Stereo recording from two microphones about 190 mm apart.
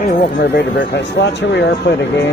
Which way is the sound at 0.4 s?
60° left (ahead or behind).